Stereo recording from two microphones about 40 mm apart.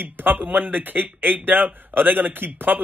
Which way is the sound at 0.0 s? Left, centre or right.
Right.